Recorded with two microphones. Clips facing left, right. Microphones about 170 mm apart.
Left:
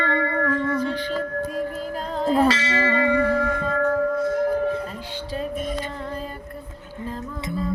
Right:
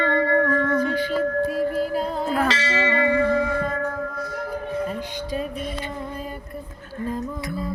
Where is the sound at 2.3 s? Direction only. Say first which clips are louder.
Left 6 dB; 30° left (ahead or behind).